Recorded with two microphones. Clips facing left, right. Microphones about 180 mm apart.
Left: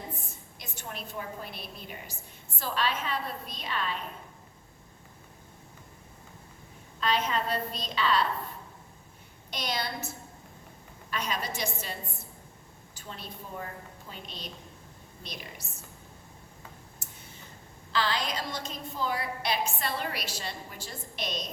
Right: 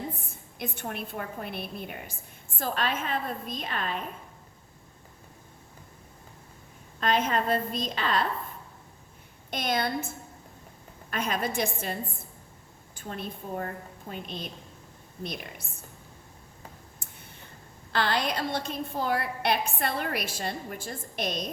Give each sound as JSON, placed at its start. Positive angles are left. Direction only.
{"t": 0.3, "sound": "a woman's voice", "side_deg": -55}
{"t": 7.0, "sound": "a woman's voice", "side_deg": -50}
{"t": 9.5, "sound": "a woman's voice", "side_deg": -50}
{"t": 11.1, "sound": "a woman's voice", "side_deg": -50}
{"t": 17.9, "sound": "a woman's voice", "side_deg": -55}